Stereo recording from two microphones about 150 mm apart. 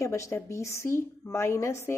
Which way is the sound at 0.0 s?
20° left (ahead or behind).